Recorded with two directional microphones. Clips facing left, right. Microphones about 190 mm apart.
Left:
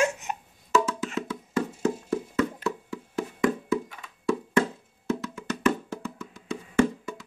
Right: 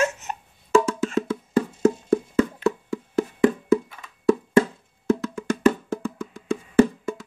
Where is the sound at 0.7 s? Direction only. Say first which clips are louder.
Right 6 dB; 45° right (ahead or behind).